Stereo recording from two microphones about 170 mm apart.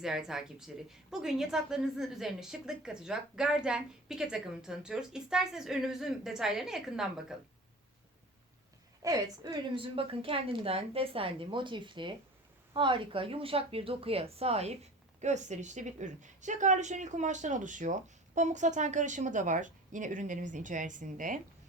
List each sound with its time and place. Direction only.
0.0 s speech: 5° right (ahead or behind)
9.0 s a woman's voice: 20° right (ahead or behind); by 21.4 s 50° right (ahead or behind)